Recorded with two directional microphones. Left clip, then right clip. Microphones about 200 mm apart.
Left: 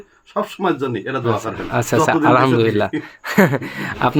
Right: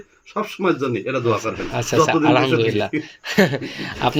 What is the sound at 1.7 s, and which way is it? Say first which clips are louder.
Speech: left 2 dB; 35° left (ahead or behind).